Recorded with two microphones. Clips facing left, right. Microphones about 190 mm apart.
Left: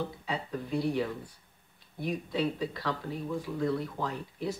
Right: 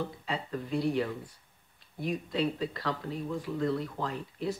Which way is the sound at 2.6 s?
5° left (ahead or behind).